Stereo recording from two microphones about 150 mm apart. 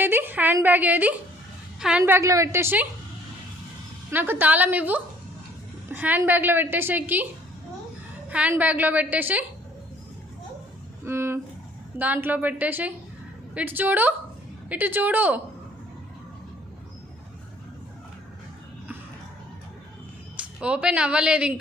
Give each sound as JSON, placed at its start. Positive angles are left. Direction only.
{"t": 0.0, "sound": "a woman's voice", "side_deg": -15}
{"t": 4.1, "sound": "a woman's voice", "side_deg": -15}
{"t": 8.3, "sound": "a woman's voice", "side_deg": -10}
{"t": 11.0, "sound": "a sound", "side_deg": -15}
{"t": 11.9, "sound": "a woman's voice", "side_deg": -10}
{"t": 20.3, "sound": "speech", "side_deg": -10}